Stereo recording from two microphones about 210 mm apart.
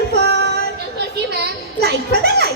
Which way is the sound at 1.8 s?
50° right (ahead or behind).